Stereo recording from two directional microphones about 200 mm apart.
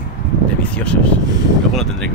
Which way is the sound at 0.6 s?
5° left (ahead or behind).